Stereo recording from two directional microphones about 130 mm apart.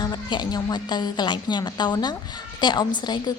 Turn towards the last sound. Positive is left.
turn(degrees=35)  # may be behind; listen again after turning